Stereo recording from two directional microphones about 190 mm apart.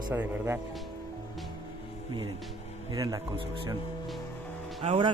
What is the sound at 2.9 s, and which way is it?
Speech, 20° right (ahead or behind).